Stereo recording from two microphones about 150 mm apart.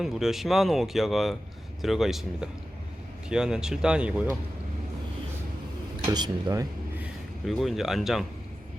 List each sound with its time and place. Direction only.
0.0 s speech: centre (ahead or behind)
6.0 s speech: 30° right (ahead or behind)
7.0 s speech: centre (ahead or behind)